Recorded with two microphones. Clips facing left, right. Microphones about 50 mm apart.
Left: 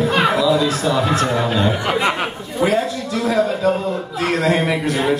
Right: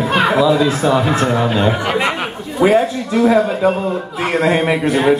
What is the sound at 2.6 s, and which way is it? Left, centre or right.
Speech, right.